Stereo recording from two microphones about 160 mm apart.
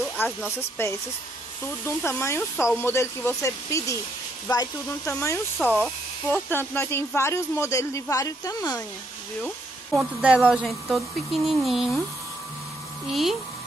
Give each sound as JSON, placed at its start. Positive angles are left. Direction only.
{"t": 0.2, "sound": "speech", "side_deg": 15}
{"t": 9.9, "sound": "speech", "side_deg": -5}
{"t": 13.1, "sound": "speech", "side_deg": 0}